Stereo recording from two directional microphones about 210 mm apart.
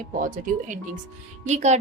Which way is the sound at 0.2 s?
40° right (ahead or behind).